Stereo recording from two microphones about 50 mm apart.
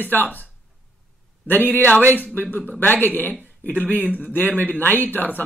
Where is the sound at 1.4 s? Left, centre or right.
Left.